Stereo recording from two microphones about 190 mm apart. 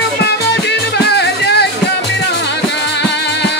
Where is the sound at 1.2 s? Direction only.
60° left (ahead or behind).